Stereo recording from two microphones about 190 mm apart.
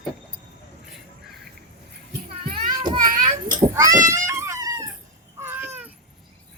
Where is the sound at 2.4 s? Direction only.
25° right (ahead or behind).